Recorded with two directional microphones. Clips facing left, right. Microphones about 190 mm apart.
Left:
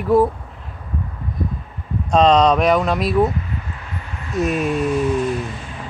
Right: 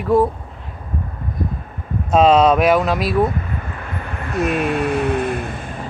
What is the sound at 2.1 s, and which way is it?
Speech, 5° right (ahead or behind).